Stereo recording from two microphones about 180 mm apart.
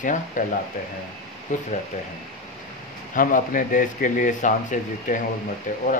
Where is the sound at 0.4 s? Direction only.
45° left (ahead or behind).